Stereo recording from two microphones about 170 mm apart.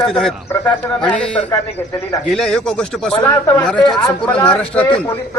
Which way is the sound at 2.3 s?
5° left (ahead or behind).